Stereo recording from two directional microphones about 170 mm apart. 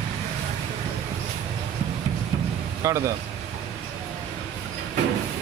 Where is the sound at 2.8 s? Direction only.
15° right (ahead or behind).